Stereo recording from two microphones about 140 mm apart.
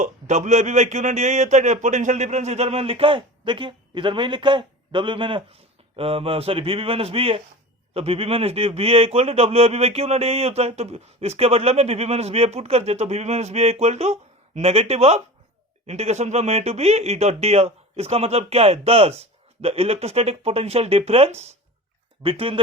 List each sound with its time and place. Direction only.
0.0 s speech: 55° right (ahead or behind); by 22.5 s 40° right (ahead or behind)